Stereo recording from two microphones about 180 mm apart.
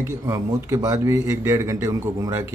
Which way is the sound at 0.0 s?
15° right (ahead or behind).